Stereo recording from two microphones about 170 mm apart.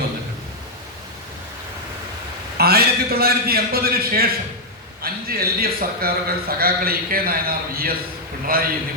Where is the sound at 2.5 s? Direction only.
65° right (ahead or behind).